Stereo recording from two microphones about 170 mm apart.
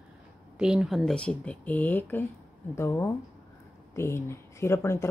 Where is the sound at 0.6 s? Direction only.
5° right (ahead or behind).